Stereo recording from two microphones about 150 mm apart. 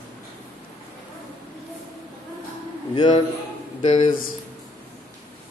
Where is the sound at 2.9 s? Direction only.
30° left (ahead or behind).